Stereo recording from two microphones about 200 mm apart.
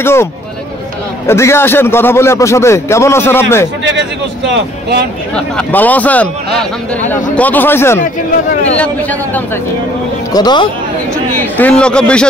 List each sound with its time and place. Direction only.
0.0 s a man's voice: 10° left (ahead or behind)
4.5 s speech: 55° right (ahead or behind)
5.3 s a man's voice: 5° left (ahead or behind)
10.3 s speech: 20° left (ahead or behind)
11.3 s a man's voice: 10° left (ahead or behind)